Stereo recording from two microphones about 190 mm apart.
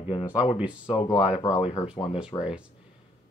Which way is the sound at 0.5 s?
5° right (ahead or behind).